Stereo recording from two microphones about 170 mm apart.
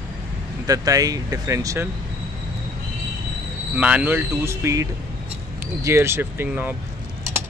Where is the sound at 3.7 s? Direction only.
10° right (ahead or behind).